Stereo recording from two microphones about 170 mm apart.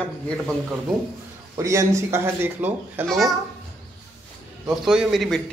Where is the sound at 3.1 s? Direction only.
Centre (ahead or behind).